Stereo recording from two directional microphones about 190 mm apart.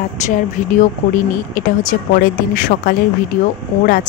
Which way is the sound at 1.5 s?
45° left (ahead or behind).